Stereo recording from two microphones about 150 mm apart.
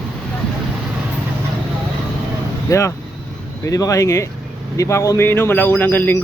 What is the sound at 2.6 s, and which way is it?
Speech, 20° left (ahead or behind).